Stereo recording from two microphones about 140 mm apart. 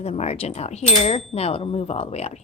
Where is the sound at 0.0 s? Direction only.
50° left (ahead or behind).